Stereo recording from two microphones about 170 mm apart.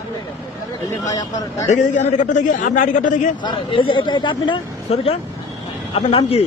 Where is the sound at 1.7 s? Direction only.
45° left (ahead or behind).